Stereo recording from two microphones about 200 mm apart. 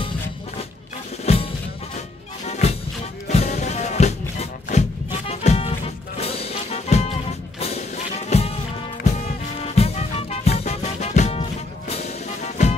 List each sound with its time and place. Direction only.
1.2 s music: 30° left (ahead or behind)